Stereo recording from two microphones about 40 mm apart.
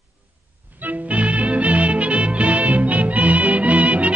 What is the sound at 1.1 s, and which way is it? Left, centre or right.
Music, right.